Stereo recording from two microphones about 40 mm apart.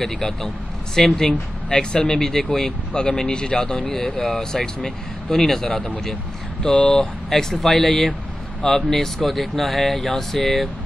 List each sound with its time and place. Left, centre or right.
0.0 s speech: centre
5.7 s speech: left
7.2 s speech: centre